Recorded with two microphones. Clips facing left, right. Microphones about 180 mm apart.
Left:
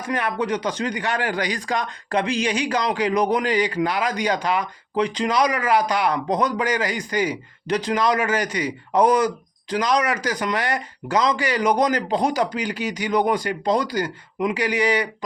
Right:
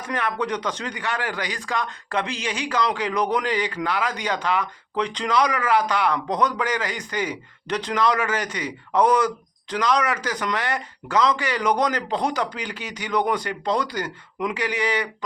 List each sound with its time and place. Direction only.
0.0 s speech: 10° left (ahead or behind)